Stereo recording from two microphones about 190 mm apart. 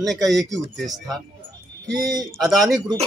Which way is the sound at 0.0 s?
Centre (ahead or behind).